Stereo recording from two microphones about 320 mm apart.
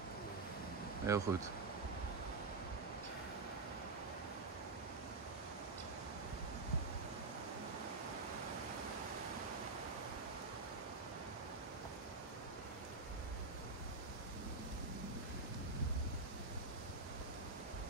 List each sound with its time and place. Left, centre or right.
1.0 s speech: centre